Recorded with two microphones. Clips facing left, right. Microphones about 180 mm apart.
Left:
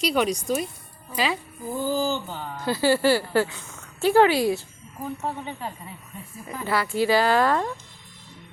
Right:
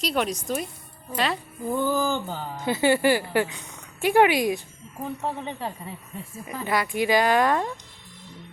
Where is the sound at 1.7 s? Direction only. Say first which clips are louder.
Right 1 dB; 60° right (ahead or behind).